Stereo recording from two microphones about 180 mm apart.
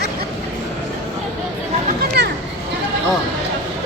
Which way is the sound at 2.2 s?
65° right (ahead or behind).